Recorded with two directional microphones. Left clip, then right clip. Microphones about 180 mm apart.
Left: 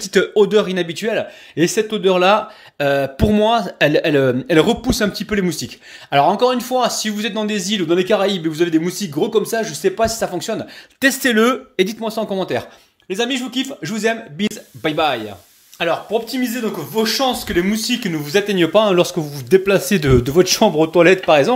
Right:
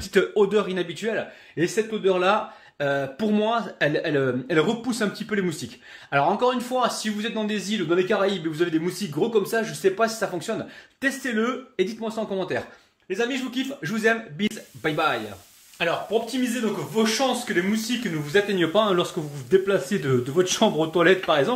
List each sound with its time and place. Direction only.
0.0 s speech: 25° left (ahead or behind)
11.0 s speech: 50° left (ahead or behind); by 21.5 s 30° left (ahead or behind)